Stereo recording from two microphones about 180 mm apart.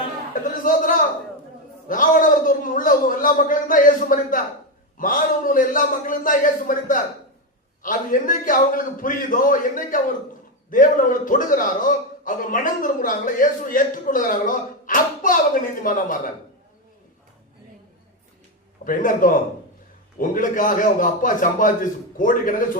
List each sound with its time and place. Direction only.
0.6 s a man's voice: 50° left (ahead or behind)
18.9 s a man's voice: 50° left (ahead or behind)